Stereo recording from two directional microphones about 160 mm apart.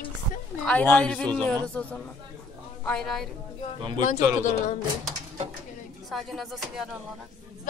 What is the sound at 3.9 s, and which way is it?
Speech, 50° left (ahead or behind).